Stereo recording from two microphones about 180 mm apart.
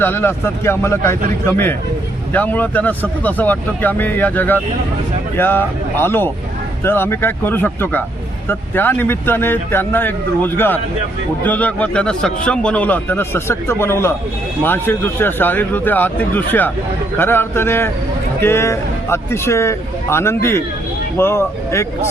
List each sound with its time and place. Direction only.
0.0 s speech: 10° left (ahead or behind)